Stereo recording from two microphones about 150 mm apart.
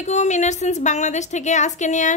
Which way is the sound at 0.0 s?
50° left (ahead or behind).